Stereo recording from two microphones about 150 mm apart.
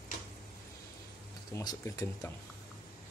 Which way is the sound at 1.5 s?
20° left (ahead or behind).